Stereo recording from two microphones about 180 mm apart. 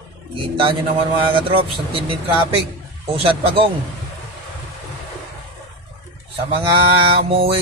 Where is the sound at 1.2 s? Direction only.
30° right (ahead or behind).